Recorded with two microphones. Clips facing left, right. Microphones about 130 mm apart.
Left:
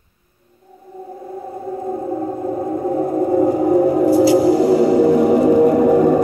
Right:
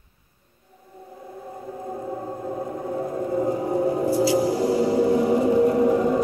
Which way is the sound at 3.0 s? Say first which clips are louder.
Left 8 dB; 65° left (ahead or behind).